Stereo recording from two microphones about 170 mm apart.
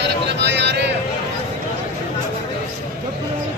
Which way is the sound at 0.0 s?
90° right.